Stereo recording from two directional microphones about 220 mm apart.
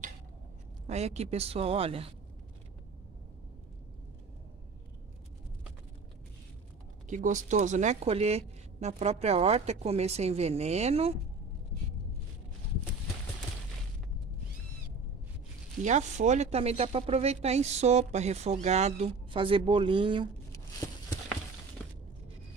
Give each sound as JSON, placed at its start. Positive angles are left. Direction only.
{"t": 0.8, "sound": "speech", "side_deg": -30}
{"t": 7.1, "sound": "speech", "side_deg": -35}
{"t": 15.8, "sound": "speech", "side_deg": -35}